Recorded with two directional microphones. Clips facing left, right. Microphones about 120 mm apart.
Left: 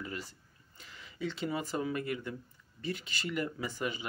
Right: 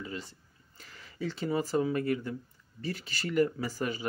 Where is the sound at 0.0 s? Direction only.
30° right (ahead or behind).